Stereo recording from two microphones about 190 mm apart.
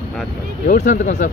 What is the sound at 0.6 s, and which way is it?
Speech, 40° left (ahead or behind).